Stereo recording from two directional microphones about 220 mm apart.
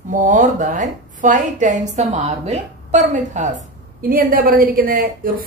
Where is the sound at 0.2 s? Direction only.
35° right (ahead or behind).